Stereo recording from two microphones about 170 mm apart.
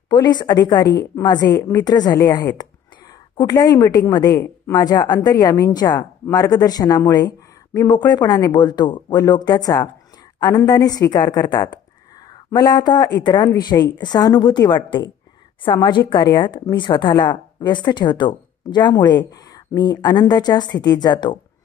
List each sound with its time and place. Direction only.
0.1 s a woman's voice: 25° left (ahead or behind)